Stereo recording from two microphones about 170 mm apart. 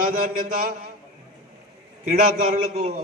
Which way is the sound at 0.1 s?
50° right (ahead or behind).